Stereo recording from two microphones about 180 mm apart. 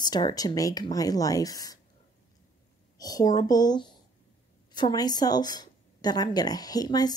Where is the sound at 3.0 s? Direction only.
20° left (ahead or behind).